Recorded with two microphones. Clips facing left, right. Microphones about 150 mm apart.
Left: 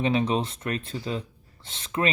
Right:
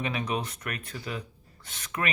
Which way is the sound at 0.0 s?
30° left (ahead or behind).